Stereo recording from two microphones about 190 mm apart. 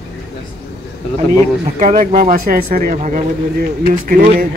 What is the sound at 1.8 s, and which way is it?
Speech, 45° right (ahead or behind).